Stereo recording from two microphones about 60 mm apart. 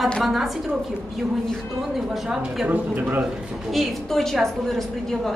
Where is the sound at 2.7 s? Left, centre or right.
Right.